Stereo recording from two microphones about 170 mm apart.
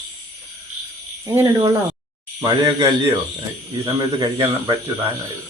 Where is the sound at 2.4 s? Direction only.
30° right (ahead or behind).